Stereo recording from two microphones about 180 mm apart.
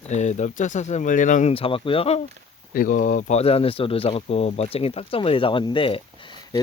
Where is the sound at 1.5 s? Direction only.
30° left (ahead or behind).